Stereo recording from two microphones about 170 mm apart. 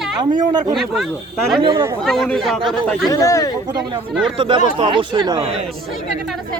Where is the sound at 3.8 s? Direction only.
Centre (ahead or behind).